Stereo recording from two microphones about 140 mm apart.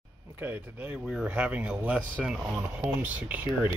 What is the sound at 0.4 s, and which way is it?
Speech, 15° right (ahead or behind).